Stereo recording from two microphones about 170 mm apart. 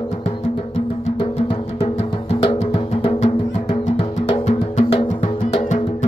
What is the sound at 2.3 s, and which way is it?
Music, 35° left (ahead or behind).